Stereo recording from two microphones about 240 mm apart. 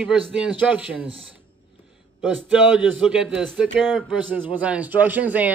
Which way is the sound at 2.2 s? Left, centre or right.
Centre.